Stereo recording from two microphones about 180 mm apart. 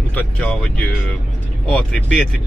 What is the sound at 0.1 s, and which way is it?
Speech, 10° left (ahead or behind).